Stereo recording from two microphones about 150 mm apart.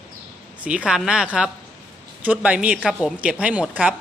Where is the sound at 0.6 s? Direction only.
5° right (ahead or behind).